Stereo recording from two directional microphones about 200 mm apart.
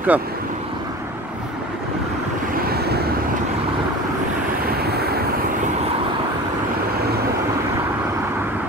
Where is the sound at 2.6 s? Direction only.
50° right (ahead or behind).